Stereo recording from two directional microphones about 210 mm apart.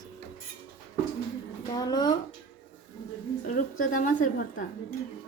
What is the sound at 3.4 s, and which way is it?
A woman's voice, 40° left (ahead or behind).